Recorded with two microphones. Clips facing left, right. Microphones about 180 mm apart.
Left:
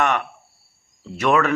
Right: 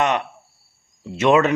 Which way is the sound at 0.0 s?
20° right (ahead or behind).